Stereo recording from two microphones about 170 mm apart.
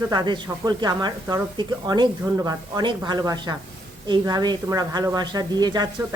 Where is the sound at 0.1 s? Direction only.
25° right (ahead or behind).